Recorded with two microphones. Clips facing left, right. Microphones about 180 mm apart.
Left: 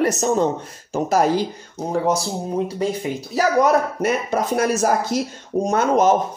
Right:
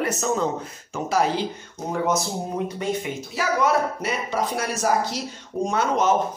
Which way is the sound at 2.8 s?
35° left (ahead or behind).